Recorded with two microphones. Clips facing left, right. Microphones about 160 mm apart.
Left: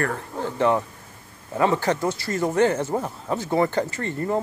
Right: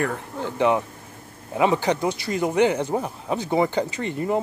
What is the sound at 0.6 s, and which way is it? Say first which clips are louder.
Speech: right 1 dB; 10° right (ahead or behind).